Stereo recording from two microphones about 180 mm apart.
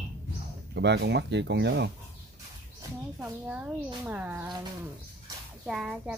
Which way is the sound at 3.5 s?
10° right (ahead or behind).